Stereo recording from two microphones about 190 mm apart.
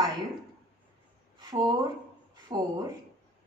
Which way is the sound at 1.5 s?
20° right (ahead or behind).